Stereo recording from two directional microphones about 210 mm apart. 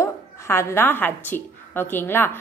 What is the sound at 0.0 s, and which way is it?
Speech, 10° left (ahead or behind).